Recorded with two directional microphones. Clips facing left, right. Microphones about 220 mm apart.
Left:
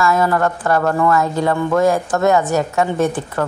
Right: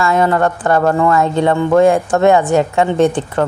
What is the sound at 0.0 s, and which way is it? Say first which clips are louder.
Speech: right 2 dB; 25° right (ahead or behind).